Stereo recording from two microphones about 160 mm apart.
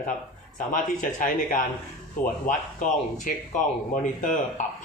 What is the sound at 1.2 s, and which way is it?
Speech, 55° left (ahead or behind).